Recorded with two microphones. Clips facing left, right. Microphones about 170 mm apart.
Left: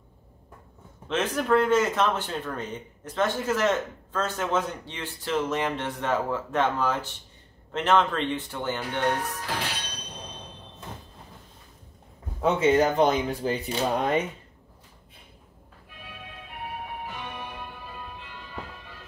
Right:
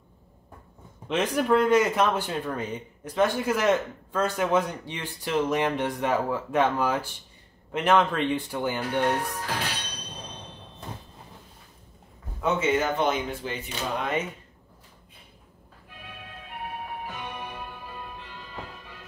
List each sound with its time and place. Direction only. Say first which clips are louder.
1.0 s speech: right 2 dB; 15° right (ahead or behind)
12.4 s speech: left 4 dB; 35° left (ahead or behind)